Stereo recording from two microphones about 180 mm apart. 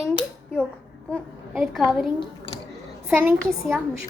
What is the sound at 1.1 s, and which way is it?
Speech, centre (ahead or behind).